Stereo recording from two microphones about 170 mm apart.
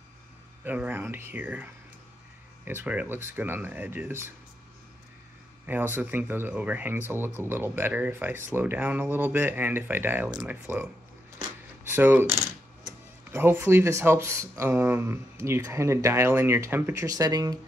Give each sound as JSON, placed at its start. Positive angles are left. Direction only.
{"t": 0.7, "sound": "speech", "side_deg": -10}
{"t": 5.7, "sound": "speech", "side_deg": -10}
{"t": 11.9, "sound": "coin", "side_deg": -10}
{"t": 12.4, "sound": "speech", "side_deg": -15}